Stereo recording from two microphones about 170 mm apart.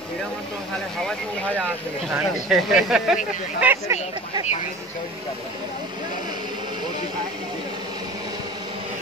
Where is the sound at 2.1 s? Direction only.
Centre (ahead or behind).